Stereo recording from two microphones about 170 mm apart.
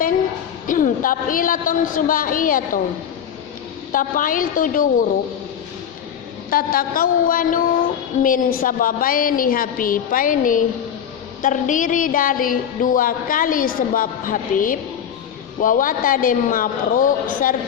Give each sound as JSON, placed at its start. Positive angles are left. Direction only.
{"t": 0.7, "sound": "music", "side_deg": 50}
{"t": 3.9, "sound": "music", "side_deg": 55}
{"t": 6.5, "sound": "a woman's voice", "side_deg": 55}
{"t": 11.4, "sound": "music", "side_deg": 50}